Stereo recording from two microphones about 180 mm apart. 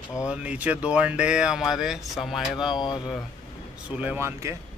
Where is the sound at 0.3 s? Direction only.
5° right (ahead or behind).